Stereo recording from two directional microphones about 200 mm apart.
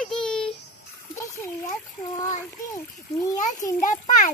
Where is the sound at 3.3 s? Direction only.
40° left (ahead or behind).